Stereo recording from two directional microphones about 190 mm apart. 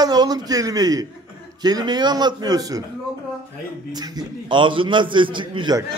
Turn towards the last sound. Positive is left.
turn(degrees=-20)  # may be behind; listen again after turning